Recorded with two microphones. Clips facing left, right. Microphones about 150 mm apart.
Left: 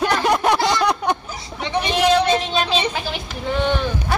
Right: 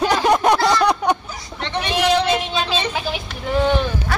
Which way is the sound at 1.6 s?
10° left (ahead or behind).